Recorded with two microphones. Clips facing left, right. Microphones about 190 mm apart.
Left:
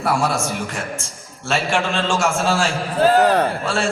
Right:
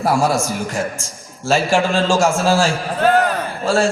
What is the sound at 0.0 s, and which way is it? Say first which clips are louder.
Speech: right 3 dB; 35° right (ahead or behind).